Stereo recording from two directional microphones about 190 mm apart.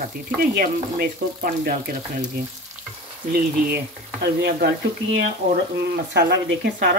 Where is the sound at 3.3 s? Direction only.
55° right (ahead or behind).